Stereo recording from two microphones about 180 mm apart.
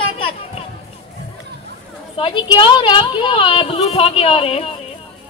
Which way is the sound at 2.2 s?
25° left (ahead or behind).